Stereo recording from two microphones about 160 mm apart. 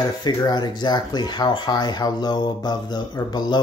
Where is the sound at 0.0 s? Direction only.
25° left (ahead or behind).